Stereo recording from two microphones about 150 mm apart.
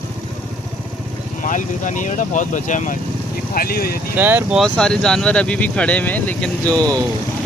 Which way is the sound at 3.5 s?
85° left.